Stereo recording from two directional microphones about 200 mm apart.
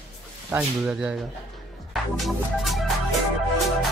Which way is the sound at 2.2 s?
Centre (ahead or behind).